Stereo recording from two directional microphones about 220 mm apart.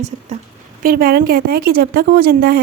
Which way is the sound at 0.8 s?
40° right (ahead or behind).